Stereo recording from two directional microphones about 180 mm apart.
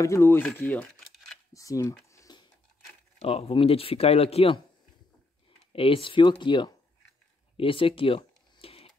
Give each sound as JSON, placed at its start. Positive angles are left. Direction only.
{"t": 0.0, "sound": "speech", "side_deg": 15}
{"t": 1.5, "sound": "typing", "side_deg": 20}
{"t": 3.2, "sound": "speech", "side_deg": 35}
{"t": 5.7, "sound": "speech", "side_deg": 30}
{"t": 7.5, "sound": "a sound", "side_deg": 30}